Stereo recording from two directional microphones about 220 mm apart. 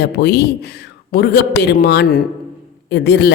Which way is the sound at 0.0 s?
50° left (ahead or behind).